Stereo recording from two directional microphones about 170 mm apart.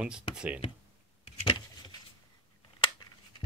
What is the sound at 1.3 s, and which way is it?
Vehicle, 30° left (ahead or behind).